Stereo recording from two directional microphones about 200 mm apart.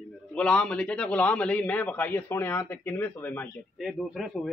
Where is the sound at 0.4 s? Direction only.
5° left (ahead or behind).